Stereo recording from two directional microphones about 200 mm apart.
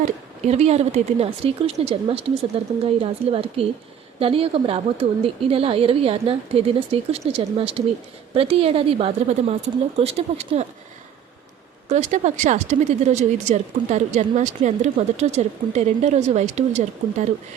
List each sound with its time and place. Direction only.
0.0 s a woman's voice: 30° right (ahead or behind)
11.9 s speech: 35° right (ahead or behind)